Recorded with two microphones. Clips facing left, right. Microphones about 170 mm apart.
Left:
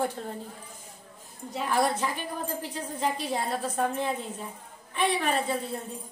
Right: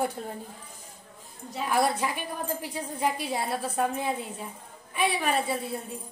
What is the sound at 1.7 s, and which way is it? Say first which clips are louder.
A woman's voice: right 1 dB; 10° right (ahead or behind).